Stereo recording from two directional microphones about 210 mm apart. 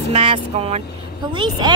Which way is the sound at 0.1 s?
25° right (ahead or behind).